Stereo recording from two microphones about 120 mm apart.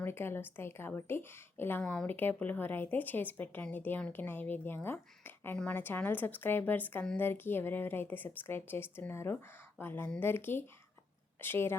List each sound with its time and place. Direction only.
0.0 s a woman's voice: 20° left (ahead or behind)